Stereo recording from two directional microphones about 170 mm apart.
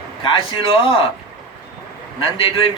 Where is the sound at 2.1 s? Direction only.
35° left (ahead or behind).